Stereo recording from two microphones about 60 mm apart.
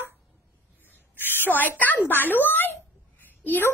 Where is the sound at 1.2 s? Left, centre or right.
Left.